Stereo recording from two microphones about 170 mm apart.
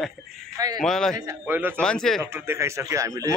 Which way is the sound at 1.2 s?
10° right (ahead or behind).